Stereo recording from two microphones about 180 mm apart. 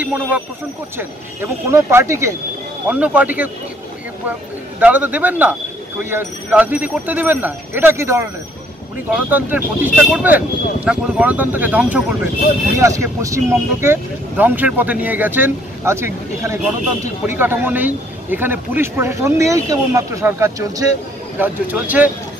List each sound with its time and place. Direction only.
0.0 s a man's voice: 10° right (ahead or behind)
4.7 s a man's voice: 10° right (ahead or behind)